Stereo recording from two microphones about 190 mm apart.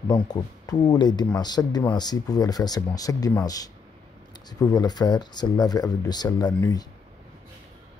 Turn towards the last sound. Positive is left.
turn(degrees=20)  # may be behind; listen again after turning